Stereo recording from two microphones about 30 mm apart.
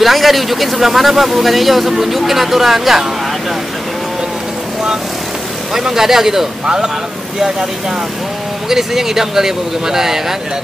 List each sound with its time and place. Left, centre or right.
0.0 s speech: centre
5.7 s speech: centre
6.6 s speech: right
8.6 s speech: centre